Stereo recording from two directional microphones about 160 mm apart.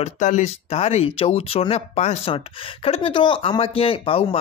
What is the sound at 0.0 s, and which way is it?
Speech, 50° left (ahead or behind).